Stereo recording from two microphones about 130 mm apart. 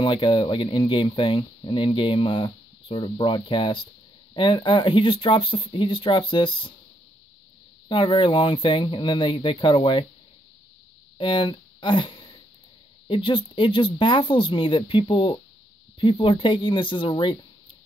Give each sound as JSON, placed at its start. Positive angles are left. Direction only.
{"t": 0.0, "sound": "speech", "side_deg": 40}
{"t": 7.9, "sound": "speech", "side_deg": 40}
{"t": 11.1, "sound": "speech", "side_deg": 40}